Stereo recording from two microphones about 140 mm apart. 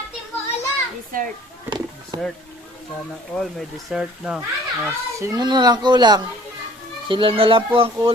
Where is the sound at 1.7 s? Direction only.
30° right (ahead or behind).